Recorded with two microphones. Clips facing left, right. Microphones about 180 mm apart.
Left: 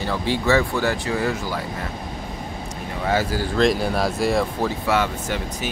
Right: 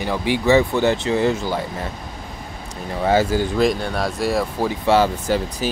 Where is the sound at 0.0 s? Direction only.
15° right (ahead or behind).